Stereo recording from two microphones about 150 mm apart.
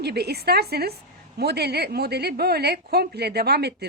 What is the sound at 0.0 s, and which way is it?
A woman's voice, 90° right.